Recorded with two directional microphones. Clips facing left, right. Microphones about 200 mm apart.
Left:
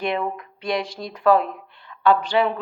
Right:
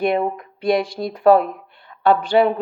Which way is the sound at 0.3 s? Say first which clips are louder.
Right 7 dB; 55° right (ahead or behind).